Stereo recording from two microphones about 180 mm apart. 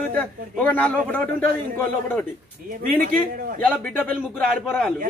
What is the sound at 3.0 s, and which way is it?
Speech, 50° right (ahead or behind).